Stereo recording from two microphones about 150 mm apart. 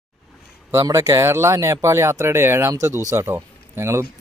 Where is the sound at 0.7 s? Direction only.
20° right (ahead or behind).